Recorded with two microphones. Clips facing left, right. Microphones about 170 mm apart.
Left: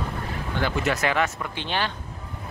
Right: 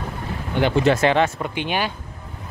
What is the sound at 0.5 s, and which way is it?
Speech, 25° right (ahead or behind).